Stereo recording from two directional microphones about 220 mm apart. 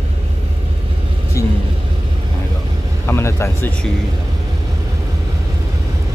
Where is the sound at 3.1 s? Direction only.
10° left (ahead or behind).